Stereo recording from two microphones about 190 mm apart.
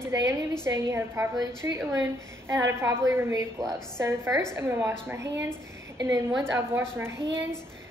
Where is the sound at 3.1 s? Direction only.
15° right (ahead or behind).